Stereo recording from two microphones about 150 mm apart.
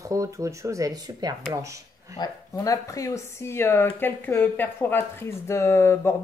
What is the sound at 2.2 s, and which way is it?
Speech, 20° left (ahead or behind).